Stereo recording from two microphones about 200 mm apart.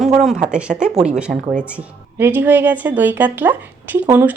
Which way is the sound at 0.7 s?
35° right (ahead or behind).